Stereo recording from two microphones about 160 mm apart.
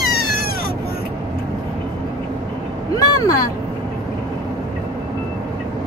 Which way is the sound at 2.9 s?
25° left (ahead or behind).